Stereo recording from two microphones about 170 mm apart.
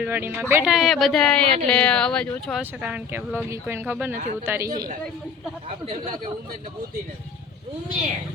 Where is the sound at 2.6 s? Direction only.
10° right (ahead or behind).